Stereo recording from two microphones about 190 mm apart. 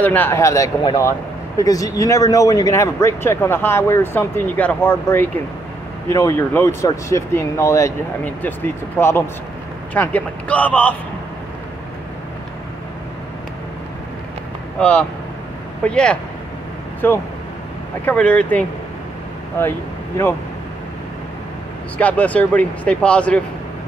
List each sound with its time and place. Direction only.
0.0 s speech: 10° left (ahead or behind)
14.8 s speech: 5° left (ahead or behind)
21.9 s speech: 5° left (ahead or behind)